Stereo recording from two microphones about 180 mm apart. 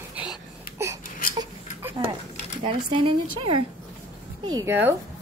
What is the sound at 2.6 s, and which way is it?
Speech, 30° right (ahead or behind).